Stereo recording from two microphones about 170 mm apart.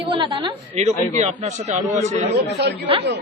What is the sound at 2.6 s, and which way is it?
Speech, 80° right.